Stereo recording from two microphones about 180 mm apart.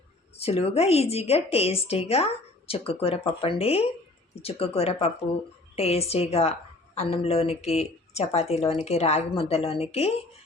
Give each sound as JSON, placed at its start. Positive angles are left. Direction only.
{"t": 0.3, "sound": "a woman's voice", "side_deg": 35}